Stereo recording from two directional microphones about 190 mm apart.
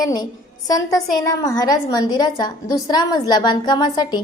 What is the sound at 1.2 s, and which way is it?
A woman's voice, 20° left (ahead or behind).